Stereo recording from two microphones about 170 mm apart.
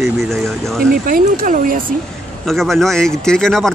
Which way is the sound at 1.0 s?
55° right (ahead or behind).